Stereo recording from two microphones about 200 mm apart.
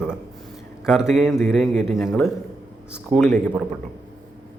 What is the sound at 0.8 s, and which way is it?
Speech, centre (ahead or behind).